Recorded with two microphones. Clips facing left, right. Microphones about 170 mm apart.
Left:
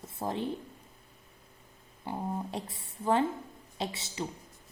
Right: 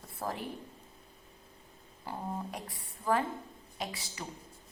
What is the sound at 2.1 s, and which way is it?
A woman's voice, 25° left (ahead or behind).